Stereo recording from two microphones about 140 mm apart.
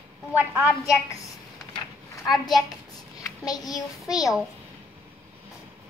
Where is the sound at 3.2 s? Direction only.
25° left (ahead or behind).